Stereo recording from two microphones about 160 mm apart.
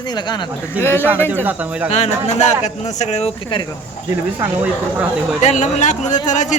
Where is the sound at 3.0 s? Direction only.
45° left (ahead or behind).